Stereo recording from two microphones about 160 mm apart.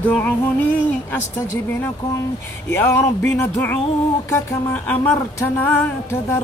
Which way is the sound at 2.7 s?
15° left (ahead or behind).